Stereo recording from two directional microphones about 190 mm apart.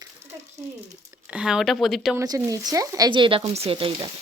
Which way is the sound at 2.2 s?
15° right (ahead or behind).